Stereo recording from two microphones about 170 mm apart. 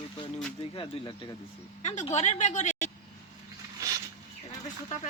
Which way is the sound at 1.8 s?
45° left (ahead or behind).